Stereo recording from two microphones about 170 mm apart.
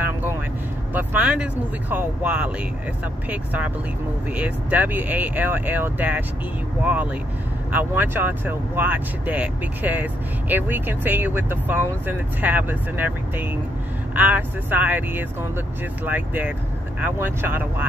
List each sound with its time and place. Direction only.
0.9 s speech: 10° right (ahead or behind)